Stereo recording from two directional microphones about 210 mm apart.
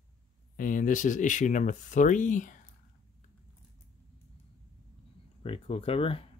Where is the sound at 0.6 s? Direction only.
40° left (ahead or behind).